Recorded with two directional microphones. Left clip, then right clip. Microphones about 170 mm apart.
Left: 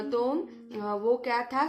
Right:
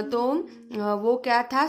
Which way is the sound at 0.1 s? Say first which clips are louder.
Right 3 dB; 45° right (ahead or behind).